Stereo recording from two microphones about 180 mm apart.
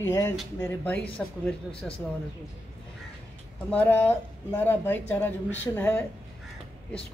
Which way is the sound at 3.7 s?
10° left (ahead or behind).